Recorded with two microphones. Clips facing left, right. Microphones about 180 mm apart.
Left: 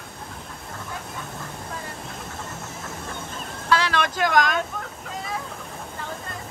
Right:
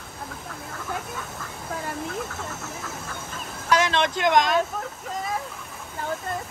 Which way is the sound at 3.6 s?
20° right (ahead or behind).